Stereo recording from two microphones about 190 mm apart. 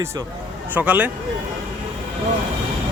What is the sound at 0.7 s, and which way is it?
Speech, 10° right (ahead or behind).